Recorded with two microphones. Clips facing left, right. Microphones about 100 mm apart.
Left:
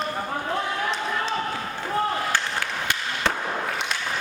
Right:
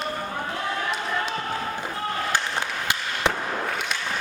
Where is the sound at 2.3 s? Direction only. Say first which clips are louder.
Even; 15° right (ahead or behind).